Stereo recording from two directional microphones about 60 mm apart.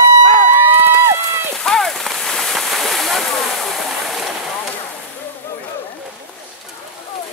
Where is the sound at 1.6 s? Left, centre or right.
Centre.